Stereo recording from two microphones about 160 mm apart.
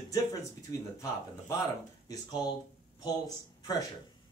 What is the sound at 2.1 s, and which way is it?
Speech, 25° left (ahead or behind).